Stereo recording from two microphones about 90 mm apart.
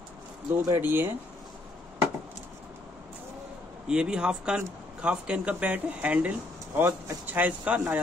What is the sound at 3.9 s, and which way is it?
Speech, 10° right (ahead or behind).